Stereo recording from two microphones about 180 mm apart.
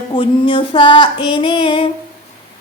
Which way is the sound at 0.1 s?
30° left (ahead or behind).